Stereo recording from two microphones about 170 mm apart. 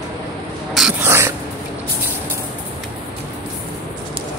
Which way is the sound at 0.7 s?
5° right (ahead or behind).